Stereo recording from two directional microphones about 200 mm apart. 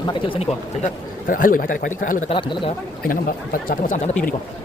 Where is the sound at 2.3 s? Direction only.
25° left (ahead or behind).